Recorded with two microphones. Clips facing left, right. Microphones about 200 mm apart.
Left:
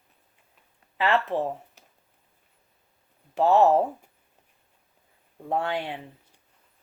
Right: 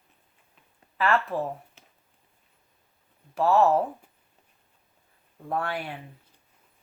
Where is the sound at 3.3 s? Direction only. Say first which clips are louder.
Left 2 dB; 20° left (ahead or behind).